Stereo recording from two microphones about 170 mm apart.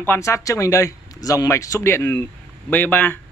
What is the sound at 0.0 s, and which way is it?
A man's voice, 15° left (ahead or behind).